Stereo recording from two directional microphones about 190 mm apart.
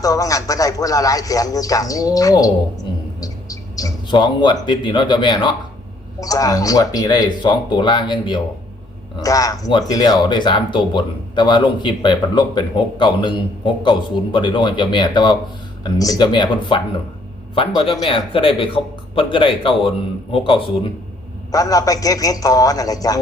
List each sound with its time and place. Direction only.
0.0 s speech: 20° left (ahead or behind)